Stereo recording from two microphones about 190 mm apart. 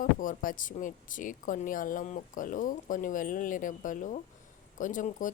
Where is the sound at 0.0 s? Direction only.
45° left (ahead or behind).